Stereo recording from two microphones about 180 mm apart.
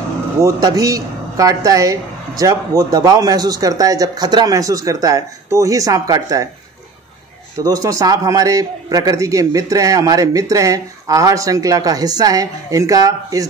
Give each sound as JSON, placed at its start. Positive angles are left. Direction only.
{"t": 0.4, "sound": "speech", "side_deg": -20}
{"t": 7.6, "sound": "speech", "side_deg": -20}